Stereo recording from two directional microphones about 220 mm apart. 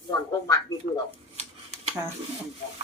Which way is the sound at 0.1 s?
15° left (ahead or behind).